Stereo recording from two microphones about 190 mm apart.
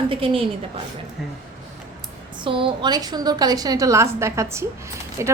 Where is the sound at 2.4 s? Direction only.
25° right (ahead or behind).